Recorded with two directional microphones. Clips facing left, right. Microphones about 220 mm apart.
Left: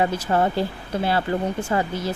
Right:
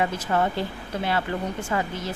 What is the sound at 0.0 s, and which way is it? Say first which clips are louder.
Speech: left 3 dB; 35° left (ahead or behind).